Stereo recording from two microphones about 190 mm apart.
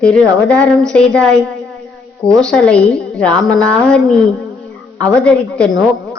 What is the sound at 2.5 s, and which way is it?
Speech, 5° left (ahead or behind).